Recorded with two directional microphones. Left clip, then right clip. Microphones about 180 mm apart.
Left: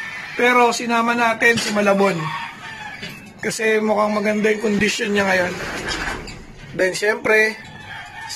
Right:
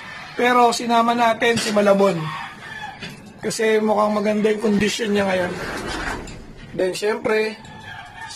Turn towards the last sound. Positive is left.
turn(degrees=10)  # may be behind; listen again after turning